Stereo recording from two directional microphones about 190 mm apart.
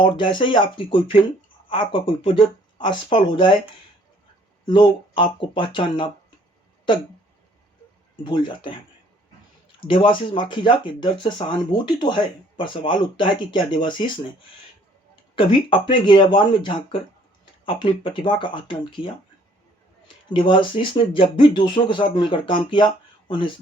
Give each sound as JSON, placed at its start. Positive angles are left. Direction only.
{"t": 0.0, "sound": "speech", "side_deg": 25}
{"t": 4.6, "sound": "speech", "side_deg": 25}
{"t": 8.1, "sound": "speech", "side_deg": 25}
{"t": 9.8, "sound": "speech", "side_deg": 25}
{"t": 15.4, "sound": "speech", "side_deg": 25}
{"t": 20.2, "sound": "speech", "side_deg": 25}